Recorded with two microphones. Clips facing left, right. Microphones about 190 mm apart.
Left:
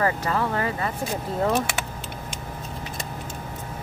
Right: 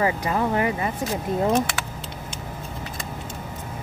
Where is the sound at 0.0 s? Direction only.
15° right (ahead or behind).